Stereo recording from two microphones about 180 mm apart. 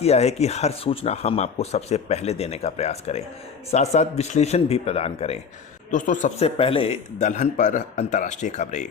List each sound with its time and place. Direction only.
0.0 s speech: 35° left (ahead or behind)
5.9 s speech: 45° left (ahead or behind)
6.6 s speech: 30° left (ahead or behind)